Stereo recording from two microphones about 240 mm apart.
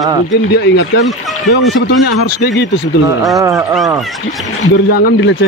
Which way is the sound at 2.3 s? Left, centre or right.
Left.